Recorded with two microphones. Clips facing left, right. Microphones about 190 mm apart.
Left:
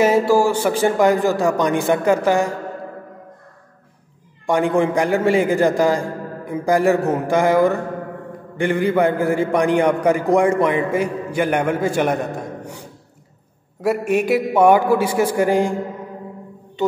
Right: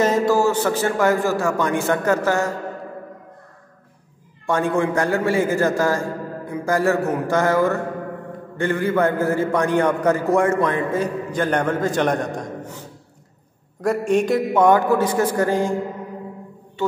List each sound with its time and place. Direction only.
0.0 s a man's voice: 10° left (ahead or behind)
4.5 s a man's voice: 15° left (ahead or behind)